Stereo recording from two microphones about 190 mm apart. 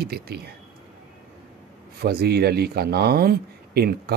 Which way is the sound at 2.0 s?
55° right (ahead or behind).